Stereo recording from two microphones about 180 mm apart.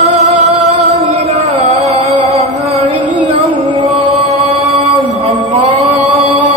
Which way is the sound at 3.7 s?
35° right (ahead or behind).